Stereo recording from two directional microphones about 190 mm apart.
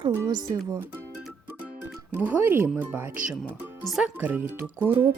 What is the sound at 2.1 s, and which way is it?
Speech, 10° right (ahead or behind).